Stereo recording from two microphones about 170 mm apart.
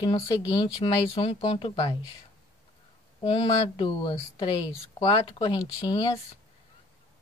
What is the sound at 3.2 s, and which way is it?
Speech, 30° left (ahead or behind).